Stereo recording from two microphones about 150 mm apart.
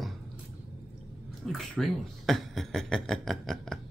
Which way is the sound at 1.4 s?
5° left (ahead or behind).